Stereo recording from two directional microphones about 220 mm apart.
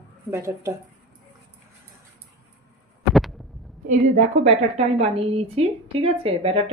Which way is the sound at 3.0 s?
Centre (ahead or behind).